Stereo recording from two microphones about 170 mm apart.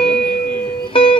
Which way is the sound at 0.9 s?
30° left (ahead or behind).